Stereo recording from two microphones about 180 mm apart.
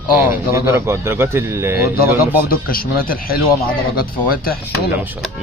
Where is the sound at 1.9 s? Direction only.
55° left (ahead or behind).